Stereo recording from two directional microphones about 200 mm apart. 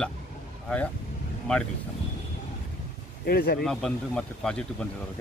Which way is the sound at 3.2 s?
50° left (ahead or behind).